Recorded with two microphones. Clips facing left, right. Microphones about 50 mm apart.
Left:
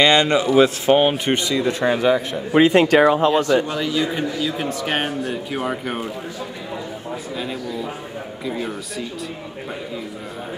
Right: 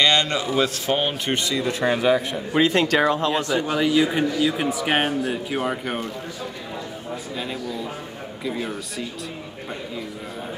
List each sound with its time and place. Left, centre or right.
0.0 s speech: centre
1.1 s speech: centre
2.5 s speech: centre
3.3 s speech: centre
7.3 s speech: centre